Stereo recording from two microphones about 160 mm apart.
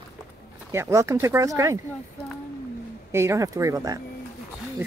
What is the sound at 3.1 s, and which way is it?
Speech, 15° right (ahead or behind).